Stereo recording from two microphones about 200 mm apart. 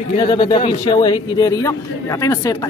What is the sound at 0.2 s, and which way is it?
Speech, 25° left (ahead or behind).